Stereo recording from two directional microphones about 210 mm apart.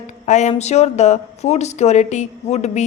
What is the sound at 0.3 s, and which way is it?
Speech, 35° left (ahead or behind).